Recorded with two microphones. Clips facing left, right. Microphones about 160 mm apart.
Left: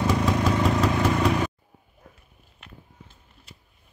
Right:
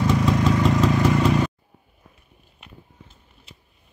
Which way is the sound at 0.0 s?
5° left (ahead or behind).